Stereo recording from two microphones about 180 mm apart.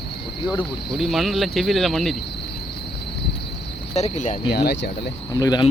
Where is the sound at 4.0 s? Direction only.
40° left (ahead or behind).